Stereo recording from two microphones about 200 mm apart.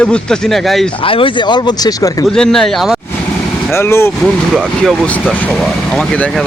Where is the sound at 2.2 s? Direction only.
5° left (ahead or behind).